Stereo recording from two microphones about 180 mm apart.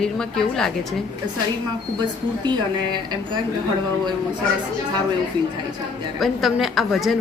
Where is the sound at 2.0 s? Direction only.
25° right (ahead or behind).